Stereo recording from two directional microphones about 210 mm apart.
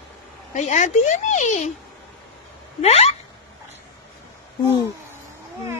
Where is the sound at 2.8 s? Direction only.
30° left (ahead or behind).